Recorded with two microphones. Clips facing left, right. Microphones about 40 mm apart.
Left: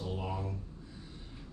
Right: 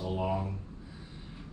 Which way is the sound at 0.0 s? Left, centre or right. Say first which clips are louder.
Right 6 dB; centre.